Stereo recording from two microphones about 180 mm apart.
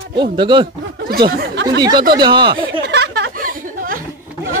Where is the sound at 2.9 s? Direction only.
65° right (ahead or behind).